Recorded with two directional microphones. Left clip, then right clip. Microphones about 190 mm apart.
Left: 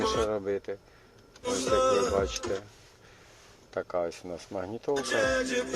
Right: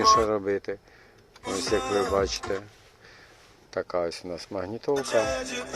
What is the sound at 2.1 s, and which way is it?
Speech, 25° right (ahead or behind).